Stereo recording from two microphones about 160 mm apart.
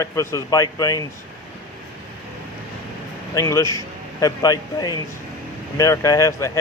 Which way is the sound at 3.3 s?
20° left (ahead or behind).